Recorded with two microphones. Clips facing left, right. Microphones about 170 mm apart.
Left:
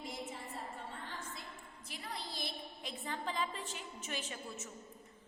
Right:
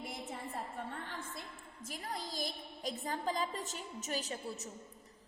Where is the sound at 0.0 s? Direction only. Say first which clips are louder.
Right 1 dB; 55° right (ahead or behind).